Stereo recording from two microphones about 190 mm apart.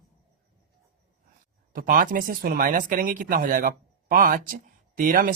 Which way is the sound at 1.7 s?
50° right (ahead or behind).